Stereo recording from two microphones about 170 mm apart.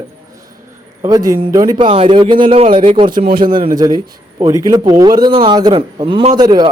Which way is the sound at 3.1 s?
60° right (ahead or behind).